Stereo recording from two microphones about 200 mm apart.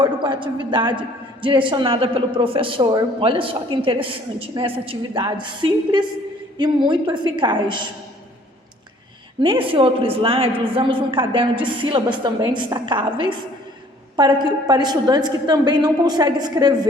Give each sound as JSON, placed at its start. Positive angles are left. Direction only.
{"t": 0.0, "sound": "a man's voice", "side_deg": -25}
{"t": 9.4, "sound": "a man's voice", "side_deg": -25}